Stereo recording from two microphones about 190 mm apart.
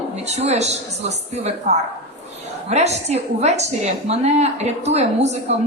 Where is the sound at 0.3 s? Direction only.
35° right (ahead or behind).